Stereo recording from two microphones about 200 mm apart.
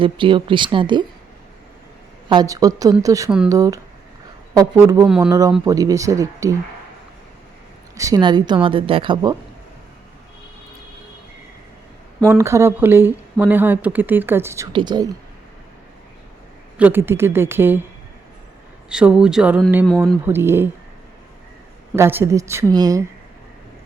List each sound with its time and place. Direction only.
0.0 s a woman's voice: 25° right (ahead or behind)
2.3 s speech: 20° right (ahead or behind)
3.2 s speech: 5° right (ahead or behind)
3.5 s speech: 15° right (ahead or behind)
5.3 s speech: 15° right (ahead or behind)
7.9 s a woman's voice: 20° right (ahead or behind)
12.3 s speech: 15° right (ahead or behind)
16.7 s speech: 10° right (ahead or behind)
18.9 s speech: 5° right (ahead or behind)
20.2 s speech: 10° right (ahead or behind)
21.9 s speech: 15° right (ahead or behind)